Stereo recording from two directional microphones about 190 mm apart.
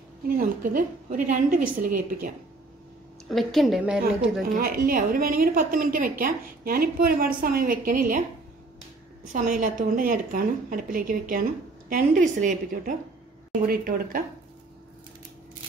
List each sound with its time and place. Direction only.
0.4 s a woman's voice: 45° right (ahead or behind)
3.3 s a woman's voice: centre (ahead or behind)
4.4 s a woman's voice: 50° right (ahead or behind)
9.3 s a woman's voice: 45° right (ahead or behind)